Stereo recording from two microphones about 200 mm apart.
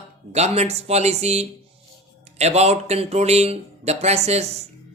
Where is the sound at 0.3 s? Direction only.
35° right (ahead or behind).